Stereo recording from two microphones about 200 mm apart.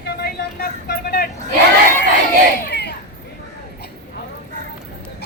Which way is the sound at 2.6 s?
55° left (ahead or behind).